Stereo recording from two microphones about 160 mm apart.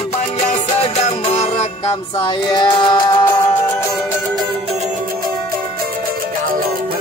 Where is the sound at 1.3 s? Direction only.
45° left (ahead or behind).